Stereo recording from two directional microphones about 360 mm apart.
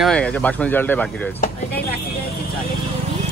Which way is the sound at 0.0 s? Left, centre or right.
Centre.